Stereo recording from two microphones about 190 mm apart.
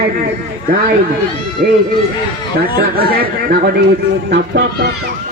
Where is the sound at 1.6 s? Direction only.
45° right (ahead or behind).